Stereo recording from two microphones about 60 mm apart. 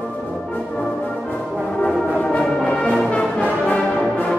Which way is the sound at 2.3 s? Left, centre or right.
Left.